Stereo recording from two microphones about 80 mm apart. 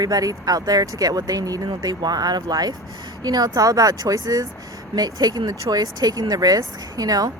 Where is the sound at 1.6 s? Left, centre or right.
Right.